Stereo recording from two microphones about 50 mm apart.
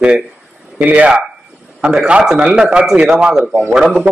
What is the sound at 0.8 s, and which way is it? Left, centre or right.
A man's voice, right.